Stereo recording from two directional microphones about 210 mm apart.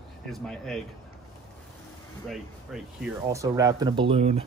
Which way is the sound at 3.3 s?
15° right (ahead or behind).